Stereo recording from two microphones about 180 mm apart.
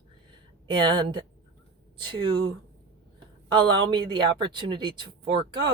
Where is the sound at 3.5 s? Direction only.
25° right (ahead or behind).